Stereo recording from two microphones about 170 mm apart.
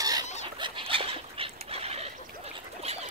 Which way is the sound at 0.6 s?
30° right (ahead or behind).